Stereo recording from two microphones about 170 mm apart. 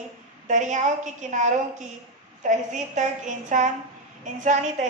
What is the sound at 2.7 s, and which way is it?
A woman's voice, 45° right (ahead or behind).